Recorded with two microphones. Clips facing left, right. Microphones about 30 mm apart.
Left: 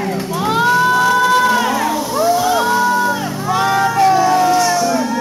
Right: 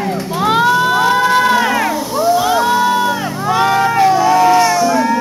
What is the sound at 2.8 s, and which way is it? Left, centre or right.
Crowd, right.